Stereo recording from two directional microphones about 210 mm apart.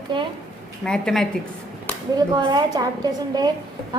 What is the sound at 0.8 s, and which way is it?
Speech, 5° left (ahead or behind).